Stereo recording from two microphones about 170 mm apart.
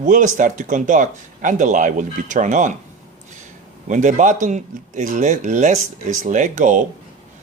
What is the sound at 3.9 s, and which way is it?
Speech, 45° right (ahead or behind).